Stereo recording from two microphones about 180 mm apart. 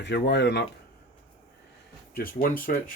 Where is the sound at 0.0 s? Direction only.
70° left (ahead or behind).